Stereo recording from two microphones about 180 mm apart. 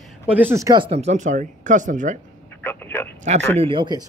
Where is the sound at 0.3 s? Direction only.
10° right (ahead or behind).